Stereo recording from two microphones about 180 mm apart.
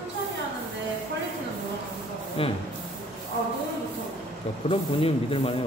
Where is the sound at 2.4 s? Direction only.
30° left (ahead or behind).